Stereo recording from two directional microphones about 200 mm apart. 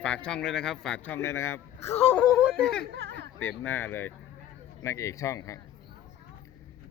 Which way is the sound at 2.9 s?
55° right (ahead or behind).